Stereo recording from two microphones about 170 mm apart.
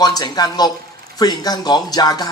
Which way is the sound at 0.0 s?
25° left (ahead or behind).